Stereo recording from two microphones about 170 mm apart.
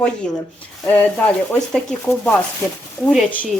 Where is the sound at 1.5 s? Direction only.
5° left (ahead or behind).